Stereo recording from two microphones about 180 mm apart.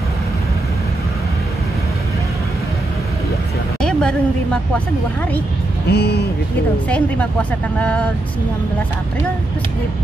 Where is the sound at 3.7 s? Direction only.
5° left (ahead or behind).